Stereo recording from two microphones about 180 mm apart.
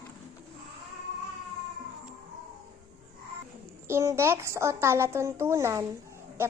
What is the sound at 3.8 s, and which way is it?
A woman's voice, 15° right (ahead or behind).